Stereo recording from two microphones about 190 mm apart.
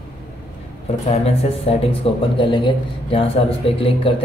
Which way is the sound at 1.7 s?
30° left (ahead or behind).